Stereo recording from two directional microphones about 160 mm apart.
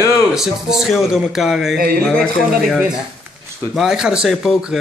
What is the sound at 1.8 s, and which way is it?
Speech, 70° right (ahead or behind).